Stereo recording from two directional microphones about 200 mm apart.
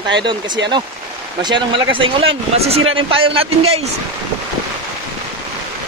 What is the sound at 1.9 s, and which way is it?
A man's voice, 25° right (ahead or behind).